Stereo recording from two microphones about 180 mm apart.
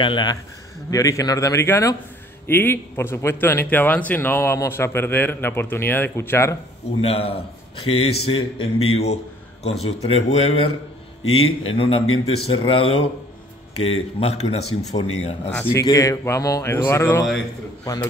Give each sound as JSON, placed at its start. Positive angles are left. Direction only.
{"t": 0.0, "sound": "a man's voice", "side_deg": 25}
{"t": 7.0, "sound": "a man's voice", "side_deg": 35}
{"t": 14.2, "sound": "a man's voice", "side_deg": 35}
{"t": 15.7, "sound": "a man's voice", "side_deg": 20}